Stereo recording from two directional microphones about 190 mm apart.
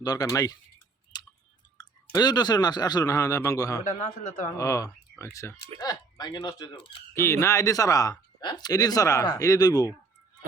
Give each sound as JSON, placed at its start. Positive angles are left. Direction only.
{"t": 0.0, "sound": "speech", "side_deg": 20}
{"t": 1.1, "sound": "chewing", "side_deg": 20}
{"t": 1.8, "sound": "speech", "side_deg": 20}
{"t": 3.8, "sound": "speech", "side_deg": 40}
{"t": 4.5, "sound": "speech", "side_deg": 15}
{"t": 7.1, "sound": "speech", "side_deg": 15}